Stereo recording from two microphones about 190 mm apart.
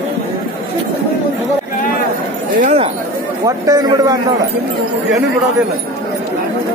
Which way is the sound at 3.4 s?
20° right (ahead or behind).